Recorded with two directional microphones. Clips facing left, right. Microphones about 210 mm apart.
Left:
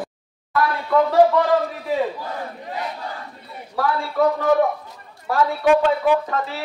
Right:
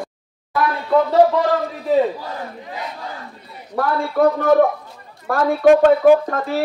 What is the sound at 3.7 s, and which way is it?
A woman's voice, 50° right (ahead or behind).